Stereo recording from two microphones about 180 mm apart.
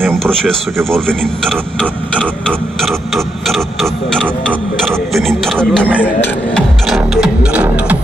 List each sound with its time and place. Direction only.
0.1 s speech: 5° left (ahead or behind)